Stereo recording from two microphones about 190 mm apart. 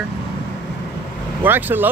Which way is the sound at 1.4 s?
10° right (ahead or behind).